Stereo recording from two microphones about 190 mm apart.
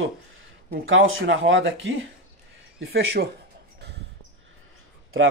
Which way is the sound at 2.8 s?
60° right (ahead or behind).